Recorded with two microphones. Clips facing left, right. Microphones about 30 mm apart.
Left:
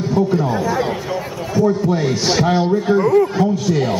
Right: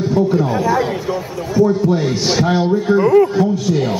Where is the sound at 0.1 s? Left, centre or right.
Centre.